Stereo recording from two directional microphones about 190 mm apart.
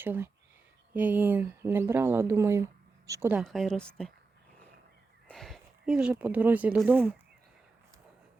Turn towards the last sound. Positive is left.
turn(degrees=-10)  # may be behind; listen again after turning